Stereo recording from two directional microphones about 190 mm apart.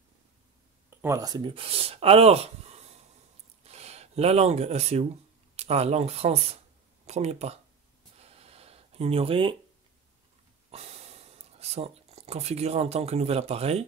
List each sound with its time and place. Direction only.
0.8 s speech: 15° right (ahead or behind); by 7.5 s 35° right (ahead or behind)
8.2 s a sound: 30° right (ahead or behind)
10.7 s speech: 35° right (ahead or behind)